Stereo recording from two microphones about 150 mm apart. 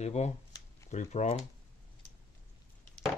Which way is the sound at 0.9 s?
50° left (ahead or behind).